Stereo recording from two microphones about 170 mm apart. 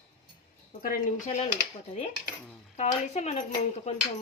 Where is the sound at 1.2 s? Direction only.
40° left (ahead or behind).